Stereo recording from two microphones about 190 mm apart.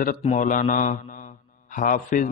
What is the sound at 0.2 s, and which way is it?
A man's voice, 40° left (ahead or behind).